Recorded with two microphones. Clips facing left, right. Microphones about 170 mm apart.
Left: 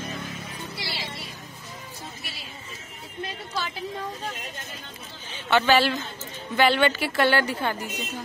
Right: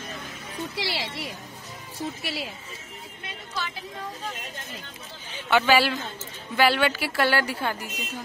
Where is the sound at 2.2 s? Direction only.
75° right (ahead or behind).